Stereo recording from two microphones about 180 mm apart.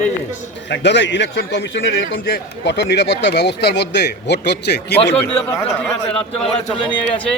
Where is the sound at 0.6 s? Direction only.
75° left (ahead or behind).